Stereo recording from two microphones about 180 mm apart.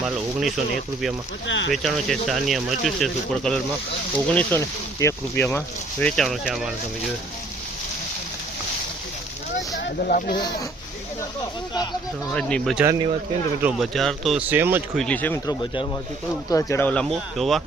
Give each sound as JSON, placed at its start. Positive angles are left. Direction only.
{"t": 0.0, "sound": "speech", "side_deg": 0}
{"t": 1.5, "sound": "speech", "side_deg": 90}
{"t": 1.7, "sound": "speech", "side_deg": 0}
{"t": 10.0, "sound": "speech", "side_deg": 55}
{"t": 12.3, "sound": "speech", "side_deg": 5}
{"t": 12.8, "sound": "speech", "side_deg": -20}
{"t": 13.6, "sound": "speech", "side_deg": -5}
{"t": 14.9, "sound": "speech", "side_deg": 5}
{"t": 15.4, "sound": "speech", "side_deg": 25}